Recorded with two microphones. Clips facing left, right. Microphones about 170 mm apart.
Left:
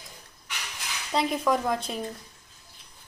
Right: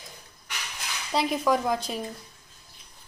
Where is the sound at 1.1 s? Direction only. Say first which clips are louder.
Right 1 dB; centre (ahead or behind).